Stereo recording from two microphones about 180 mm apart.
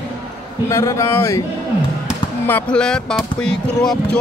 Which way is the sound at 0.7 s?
15° left (ahead or behind).